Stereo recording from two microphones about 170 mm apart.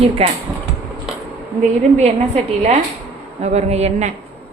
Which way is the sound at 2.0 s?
40° right (ahead or behind).